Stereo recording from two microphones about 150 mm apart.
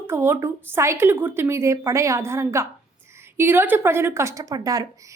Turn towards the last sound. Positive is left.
turn(degrees=-25)  # may be behind; listen again after turning